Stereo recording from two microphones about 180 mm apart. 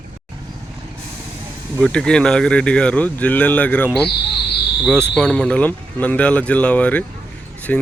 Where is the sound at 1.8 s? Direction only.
5° left (ahead or behind).